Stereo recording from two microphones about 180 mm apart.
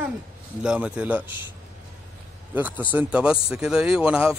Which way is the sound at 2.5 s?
10° right (ahead or behind).